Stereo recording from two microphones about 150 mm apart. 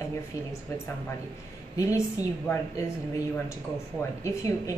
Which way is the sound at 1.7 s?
20° left (ahead or behind).